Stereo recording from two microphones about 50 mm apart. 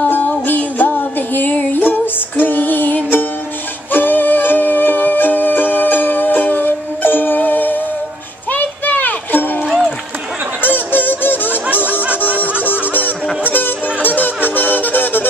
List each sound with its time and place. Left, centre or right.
0.1 s music: left
9.7 s music: centre
10.6 s a sound: left
12.4 s music: left